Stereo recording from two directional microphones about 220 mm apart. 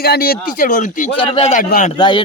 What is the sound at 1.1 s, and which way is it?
Speech, 25° left (ahead or behind).